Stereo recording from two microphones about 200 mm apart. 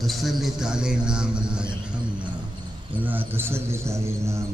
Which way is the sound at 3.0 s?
10° right (ahead or behind).